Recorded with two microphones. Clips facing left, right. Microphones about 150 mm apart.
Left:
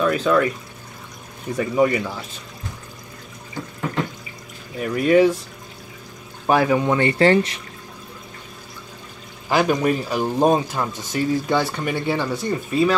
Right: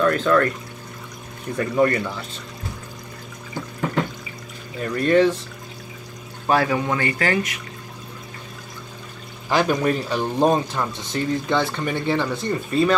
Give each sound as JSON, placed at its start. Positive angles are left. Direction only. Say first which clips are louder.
{"t": 0.0, "sound": "speech", "louder": "even", "side_deg": 10}
{"t": 1.6, "sound": "speech", "louder": "left 1 dB", "side_deg": 10}
{"t": 4.7, "sound": "speech", "louder": "left 2 dB", "side_deg": 10}
{"t": 6.4, "sound": "speech", "louder": "left 3 dB", "side_deg": 15}
{"t": 9.5, "sound": "speech", "louder": "left 1 dB", "side_deg": 10}